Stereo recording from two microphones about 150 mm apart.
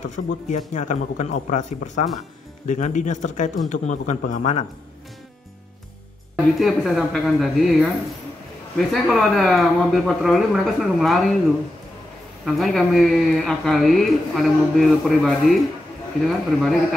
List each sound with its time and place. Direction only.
0.1 s a man's voice: 55° left (ahead or behind)
6.3 s speech: centre (ahead or behind)